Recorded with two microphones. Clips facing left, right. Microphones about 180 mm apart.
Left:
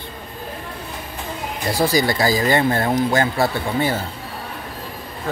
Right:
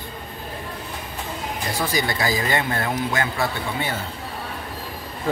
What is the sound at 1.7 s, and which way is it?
Speech, 35° left (ahead or behind).